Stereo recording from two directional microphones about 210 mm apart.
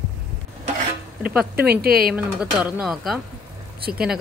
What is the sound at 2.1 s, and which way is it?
Speech, 5° right (ahead or behind).